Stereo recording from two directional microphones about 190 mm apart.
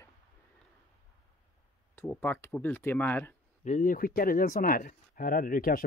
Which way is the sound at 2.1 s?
10° left (ahead or behind).